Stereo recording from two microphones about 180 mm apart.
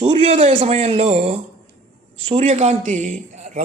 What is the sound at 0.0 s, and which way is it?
A man's voice, 30° right (ahead or behind).